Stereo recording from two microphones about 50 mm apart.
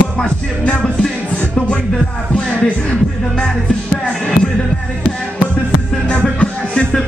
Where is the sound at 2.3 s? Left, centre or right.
Centre.